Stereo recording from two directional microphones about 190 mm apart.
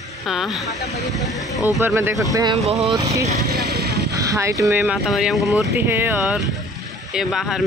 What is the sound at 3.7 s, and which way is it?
Vehicle, 55° right (ahead or behind).